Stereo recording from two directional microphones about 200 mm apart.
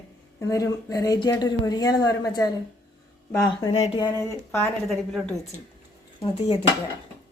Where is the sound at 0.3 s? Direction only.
15° left (ahead or behind).